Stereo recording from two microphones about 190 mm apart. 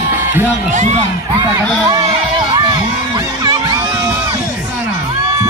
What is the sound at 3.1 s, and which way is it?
Music, 20° right (ahead or behind).